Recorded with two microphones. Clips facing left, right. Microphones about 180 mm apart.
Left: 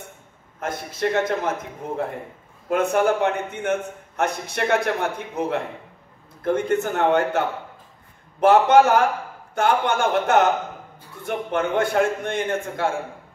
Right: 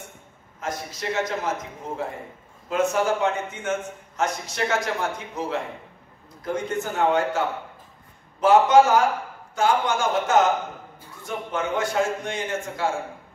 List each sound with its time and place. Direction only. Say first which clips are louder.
0.6 s a man's voice: left 5 dB; 55° left (ahead or behind)
2.7 s a man's voice: left 3 dB; 55° left (ahead or behind)